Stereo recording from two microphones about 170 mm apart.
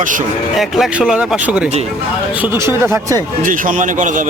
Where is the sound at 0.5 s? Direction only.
Centre (ahead or behind).